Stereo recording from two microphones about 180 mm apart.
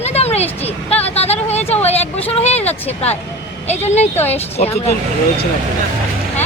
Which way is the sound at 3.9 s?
40° left (ahead or behind).